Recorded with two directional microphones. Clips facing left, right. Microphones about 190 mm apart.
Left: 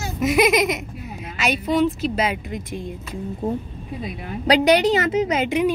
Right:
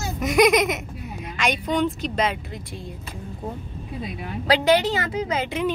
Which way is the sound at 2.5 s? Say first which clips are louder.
Left 6 dB; 20° left (ahead or behind).